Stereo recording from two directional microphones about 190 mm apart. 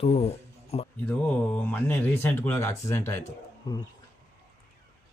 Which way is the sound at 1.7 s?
10° left (ahead or behind).